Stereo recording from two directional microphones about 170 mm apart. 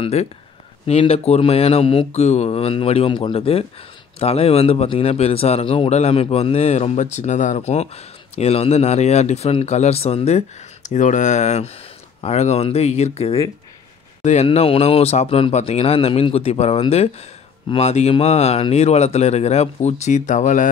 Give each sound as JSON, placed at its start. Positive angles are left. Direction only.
{"t": 0.0, "sound": "a man's voice", "side_deg": 40}